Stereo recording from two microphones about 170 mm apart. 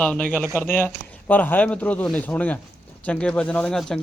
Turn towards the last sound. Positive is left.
turn(degrees=5)  # may be behind; listen again after turning